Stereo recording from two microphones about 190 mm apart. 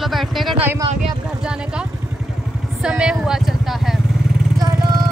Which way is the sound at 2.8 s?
5° right (ahead or behind).